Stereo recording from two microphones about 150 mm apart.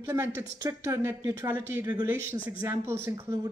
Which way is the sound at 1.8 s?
30° right (ahead or behind).